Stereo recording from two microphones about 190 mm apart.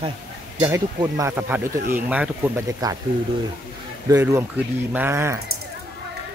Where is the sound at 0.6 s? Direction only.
15° right (ahead or behind).